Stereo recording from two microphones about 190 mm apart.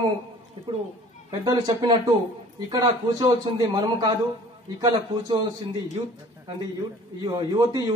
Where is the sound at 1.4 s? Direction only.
20° right (ahead or behind).